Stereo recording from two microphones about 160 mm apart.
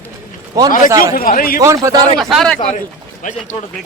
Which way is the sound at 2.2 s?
Centre (ahead or behind).